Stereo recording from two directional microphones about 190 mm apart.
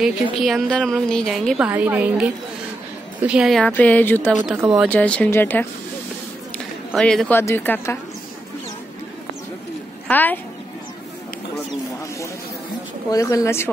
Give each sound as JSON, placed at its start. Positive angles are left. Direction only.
{"t": 0.0, "sound": "a woman's voice", "side_deg": 0}
{"t": 4.6, "sound": "a woman's voice", "side_deg": -5}
{"t": 4.8, "sound": "a woman's voice", "side_deg": 5}
{"t": 6.9, "sound": "a woman's voice", "side_deg": 0}
{"t": 10.0, "sound": "a woman's voice", "side_deg": 10}
{"t": 13.1, "sound": "a woman's voice", "side_deg": 15}